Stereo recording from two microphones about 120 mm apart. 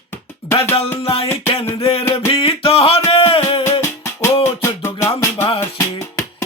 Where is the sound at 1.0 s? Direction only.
50° left (ahead or behind).